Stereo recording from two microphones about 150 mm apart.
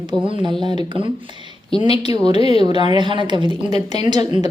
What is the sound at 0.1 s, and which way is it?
Speech, 30° right (ahead or behind).